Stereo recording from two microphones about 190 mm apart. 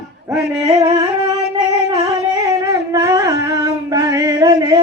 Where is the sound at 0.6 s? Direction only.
20° right (ahead or behind).